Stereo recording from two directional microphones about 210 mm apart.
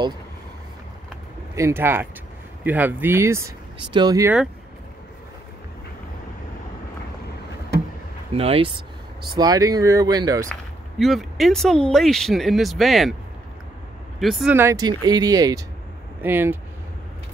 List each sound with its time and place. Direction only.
1.5 s speech: 10° right (ahead or behind)
8.3 s speech: 25° right (ahead or behind)
10.5 s speech: centre (ahead or behind)
14.2 s speech: centre (ahead or behind)